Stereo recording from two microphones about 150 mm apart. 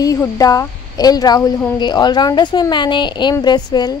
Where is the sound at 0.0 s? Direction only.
25° left (ahead or behind).